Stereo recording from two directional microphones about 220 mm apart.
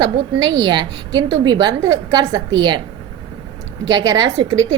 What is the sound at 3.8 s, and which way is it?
Speech, 15° right (ahead or behind).